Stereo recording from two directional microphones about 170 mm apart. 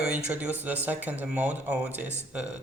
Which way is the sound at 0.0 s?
5° right (ahead or behind).